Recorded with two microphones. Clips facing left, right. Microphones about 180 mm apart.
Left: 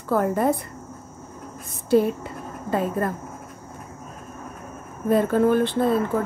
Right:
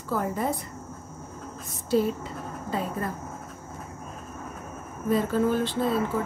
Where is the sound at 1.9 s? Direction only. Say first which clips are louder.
Left 5 dB; 60° left (ahead or behind).